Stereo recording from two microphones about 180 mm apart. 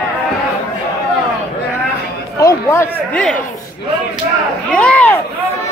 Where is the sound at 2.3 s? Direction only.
15° left (ahead or behind).